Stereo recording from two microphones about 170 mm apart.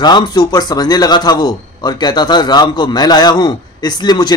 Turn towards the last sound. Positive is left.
turn(degrees=25)  # may be behind; listen again after turning